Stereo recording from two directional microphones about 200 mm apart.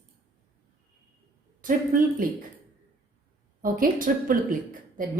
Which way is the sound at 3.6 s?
45° right (ahead or behind).